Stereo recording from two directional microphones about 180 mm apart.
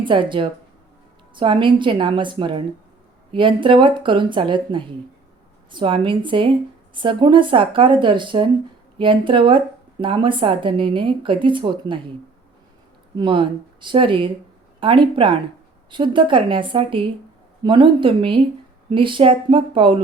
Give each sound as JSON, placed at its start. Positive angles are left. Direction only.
{"t": 0.0, "sound": "a woman's voice", "side_deg": -25}
{"t": 13.1, "sound": "speech", "side_deg": -30}